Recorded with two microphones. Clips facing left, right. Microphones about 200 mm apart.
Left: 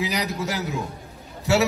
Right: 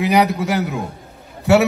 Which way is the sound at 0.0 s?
60° right (ahead or behind).